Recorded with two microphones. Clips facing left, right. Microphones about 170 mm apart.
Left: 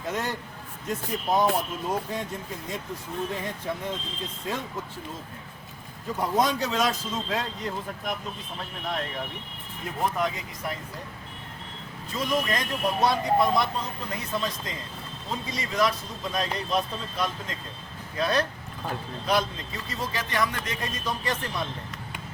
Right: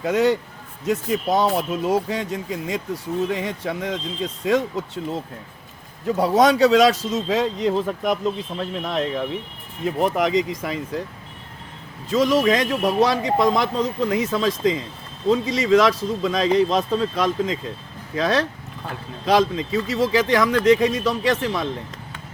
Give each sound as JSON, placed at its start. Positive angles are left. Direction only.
{"t": 0.0, "sound": "a man's voice", "side_deg": -80}
{"t": 6.1, "sound": "a man's voice", "side_deg": -80}
{"t": 10.0, "sound": "a man's voice", "side_deg": -85}
{"t": 12.1, "sound": "a man's voice", "side_deg": -90}